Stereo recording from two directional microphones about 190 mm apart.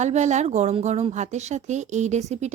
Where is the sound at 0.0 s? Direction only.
40° right (ahead or behind).